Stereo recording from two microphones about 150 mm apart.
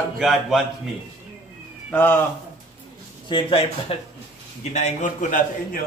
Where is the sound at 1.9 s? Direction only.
10° left (ahead or behind).